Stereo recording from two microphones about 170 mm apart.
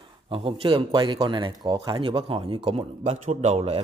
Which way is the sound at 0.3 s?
30° right (ahead or behind).